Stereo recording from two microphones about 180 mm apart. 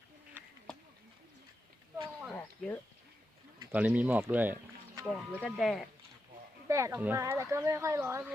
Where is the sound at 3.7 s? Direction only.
10° right (ahead or behind).